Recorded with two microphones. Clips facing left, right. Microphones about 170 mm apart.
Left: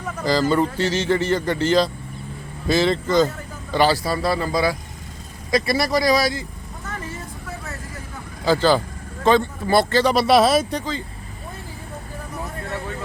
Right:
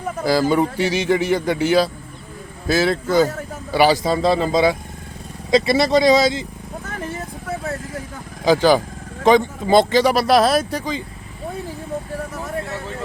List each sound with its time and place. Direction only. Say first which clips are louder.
0.3 s speech: right 2 dB; 10° right (ahead or behind)
8.4 s speech: right 3 dB; 15° right (ahead or behind)
10.2 s speech: even; centre (ahead or behind)